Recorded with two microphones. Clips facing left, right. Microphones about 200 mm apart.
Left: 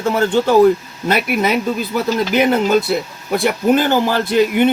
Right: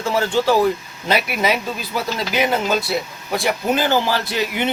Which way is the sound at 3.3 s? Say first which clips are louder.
Left 5 dB; 55° left (ahead or behind).